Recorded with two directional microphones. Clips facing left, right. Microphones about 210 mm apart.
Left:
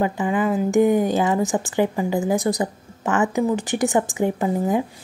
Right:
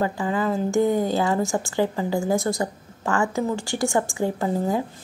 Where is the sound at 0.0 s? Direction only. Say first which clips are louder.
Left 3 dB; 15° left (ahead or behind).